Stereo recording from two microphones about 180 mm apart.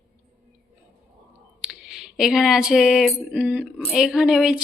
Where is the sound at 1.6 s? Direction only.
5° right (ahead or behind).